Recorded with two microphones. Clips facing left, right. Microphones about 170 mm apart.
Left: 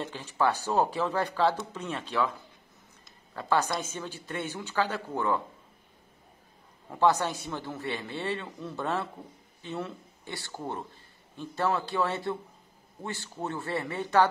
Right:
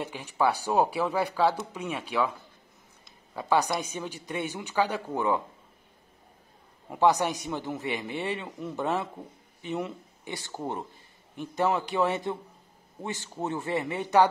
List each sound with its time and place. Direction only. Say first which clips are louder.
0.0 s speech: right 1 dB; 15° right (ahead or behind)
3.3 s speech: right 2 dB; 15° right (ahead or behind)
6.9 s speech: right 2 dB; 15° right (ahead or behind)